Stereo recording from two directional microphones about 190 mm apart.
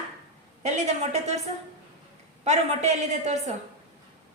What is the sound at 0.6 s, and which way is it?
Speech, 35° right (ahead or behind).